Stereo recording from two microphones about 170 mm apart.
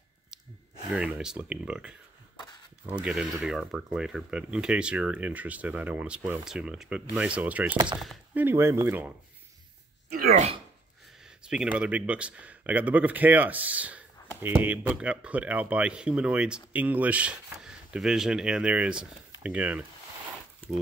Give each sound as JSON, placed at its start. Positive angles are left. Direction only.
{"t": 0.8, "sound": "speech", "side_deg": -5}
{"t": 10.1, "sound": "speech", "side_deg": -50}
{"t": 11.2, "sound": "speech", "side_deg": -5}